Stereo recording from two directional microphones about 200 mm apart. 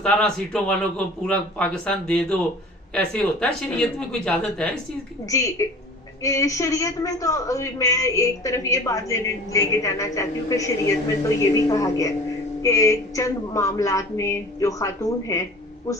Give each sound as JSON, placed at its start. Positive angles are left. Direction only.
{"t": 0.0, "sound": "speech", "side_deg": 5}
{"t": 5.3, "sound": "a man's voice", "side_deg": 15}